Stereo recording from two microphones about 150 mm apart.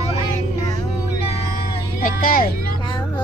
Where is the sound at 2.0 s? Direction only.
65° left (ahead or behind).